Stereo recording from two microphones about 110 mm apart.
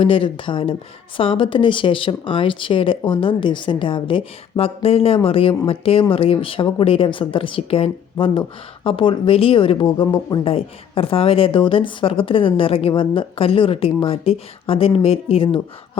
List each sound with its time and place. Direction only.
0.0 s speech: 55° left (ahead or behind)